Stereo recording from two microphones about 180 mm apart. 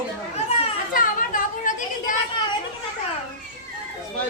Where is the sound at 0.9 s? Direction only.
50° left (ahead or behind).